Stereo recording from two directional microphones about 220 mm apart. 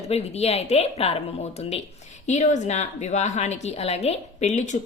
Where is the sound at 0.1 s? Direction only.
30° left (ahead or behind).